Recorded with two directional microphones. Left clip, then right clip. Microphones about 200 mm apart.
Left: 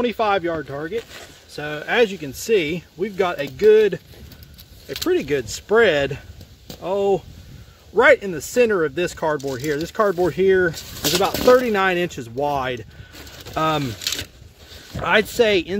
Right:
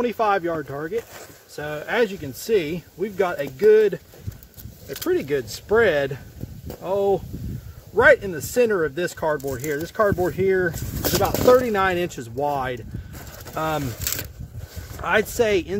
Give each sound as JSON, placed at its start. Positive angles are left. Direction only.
{"t": 0.0, "sound": "speech", "side_deg": 40}
{"t": 4.8, "sound": "speech", "side_deg": 30}
{"t": 15.0, "sound": "speech", "side_deg": 50}